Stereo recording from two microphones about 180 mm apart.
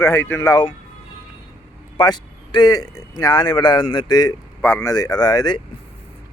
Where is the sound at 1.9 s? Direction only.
25° left (ahead or behind).